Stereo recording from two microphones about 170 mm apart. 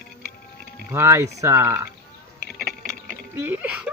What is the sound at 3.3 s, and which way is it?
Speech, 10° right (ahead or behind).